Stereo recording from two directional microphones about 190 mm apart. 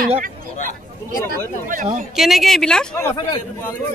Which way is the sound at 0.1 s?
45° right (ahead or behind).